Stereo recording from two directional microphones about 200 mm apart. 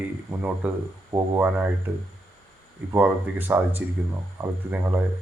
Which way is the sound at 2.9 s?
10° right (ahead or behind).